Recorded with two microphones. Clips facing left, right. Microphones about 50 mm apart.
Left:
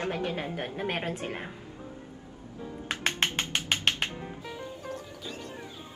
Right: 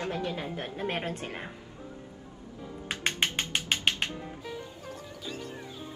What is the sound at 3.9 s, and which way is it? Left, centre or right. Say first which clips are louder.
Music: even; left.